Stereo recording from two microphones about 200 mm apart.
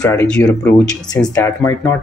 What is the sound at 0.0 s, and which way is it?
Speech, 10° left (ahead or behind).